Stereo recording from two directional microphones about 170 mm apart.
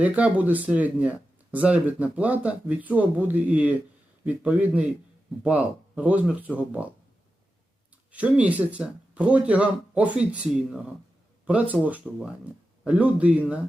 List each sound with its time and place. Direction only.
0.0 s speech: 10° right (ahead or behind)
8.1 s speech: 10° right (ahead or behind)